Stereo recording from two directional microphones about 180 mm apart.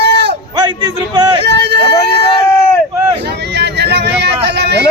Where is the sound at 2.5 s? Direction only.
15° left (ahead or behind).